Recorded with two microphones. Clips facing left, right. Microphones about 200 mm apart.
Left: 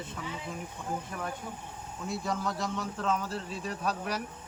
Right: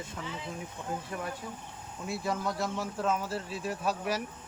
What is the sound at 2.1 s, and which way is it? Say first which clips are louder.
A man's voice: right 1 dB; 5° right (ahead or behind).